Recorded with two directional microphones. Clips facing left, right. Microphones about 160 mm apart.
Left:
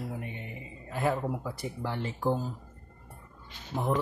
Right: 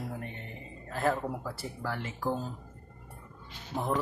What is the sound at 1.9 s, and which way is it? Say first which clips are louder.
Speech: left 5 dB; 35° left (ahead or behind).